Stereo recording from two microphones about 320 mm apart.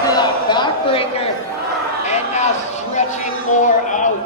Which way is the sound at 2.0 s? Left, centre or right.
Left.